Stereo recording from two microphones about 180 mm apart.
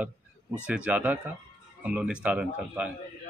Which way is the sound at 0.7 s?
5° right (ahead or behind).